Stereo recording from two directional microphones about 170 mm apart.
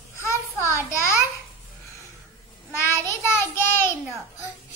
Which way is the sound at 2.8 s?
15° left (ahead or behind).